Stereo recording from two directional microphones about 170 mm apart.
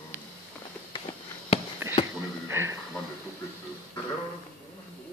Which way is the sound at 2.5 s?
15° right (ahead or behind).